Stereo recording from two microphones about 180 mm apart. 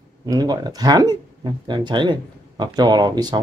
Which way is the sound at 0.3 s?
20° right (ahead or behind).